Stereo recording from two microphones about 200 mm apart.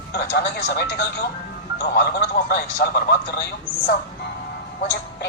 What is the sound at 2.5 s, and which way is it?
Speech, 55° left (ahead or behind).